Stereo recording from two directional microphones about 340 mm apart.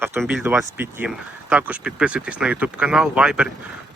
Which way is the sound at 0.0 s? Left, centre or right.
Centre.